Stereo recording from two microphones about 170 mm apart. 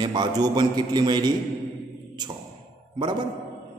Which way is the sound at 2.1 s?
25° right (ahead or behind).